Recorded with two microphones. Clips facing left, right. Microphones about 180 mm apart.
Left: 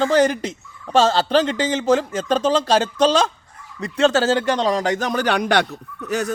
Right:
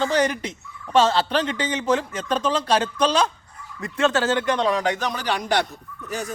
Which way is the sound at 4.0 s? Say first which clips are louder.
Left 4 dB; 30° left (ahead or behind).